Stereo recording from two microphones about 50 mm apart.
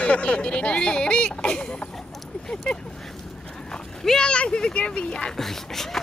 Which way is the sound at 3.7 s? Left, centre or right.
Centre.